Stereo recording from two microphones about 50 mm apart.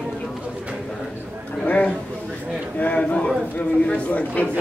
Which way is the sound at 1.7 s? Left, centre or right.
Left.